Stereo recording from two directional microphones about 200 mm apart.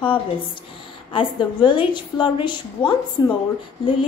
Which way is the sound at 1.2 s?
25° left (ahead or behind).